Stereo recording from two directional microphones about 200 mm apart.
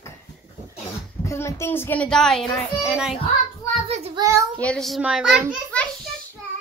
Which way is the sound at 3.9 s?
30° right (ahead or behind).